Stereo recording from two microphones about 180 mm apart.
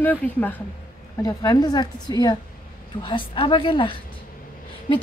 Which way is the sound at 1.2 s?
20° left (ahead or behind).